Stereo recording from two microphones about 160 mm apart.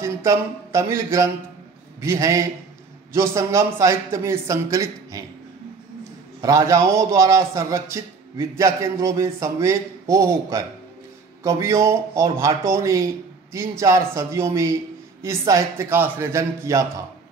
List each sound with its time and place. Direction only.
0.0 s a sound: 20° right (ahead or behind)
2.0 s a man's voice: 20° right (ahead or behind)
6.4 s a man's voice: 20° right (ahead or behind)